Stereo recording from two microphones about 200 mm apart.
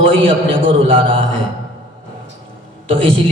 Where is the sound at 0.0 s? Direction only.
25° right (ahead or behind).